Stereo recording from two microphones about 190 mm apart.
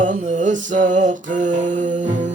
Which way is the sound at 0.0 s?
40° right (ahead or behind).